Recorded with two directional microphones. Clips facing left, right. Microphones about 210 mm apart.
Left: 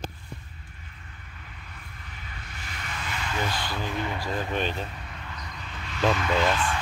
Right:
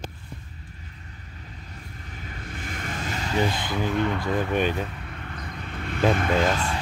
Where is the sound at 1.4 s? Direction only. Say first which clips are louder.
Right 5 dB; 35° right (ahead or behind).